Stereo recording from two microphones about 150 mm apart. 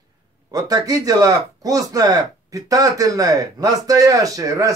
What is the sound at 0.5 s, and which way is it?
Speech, 25° right (ahead or behind).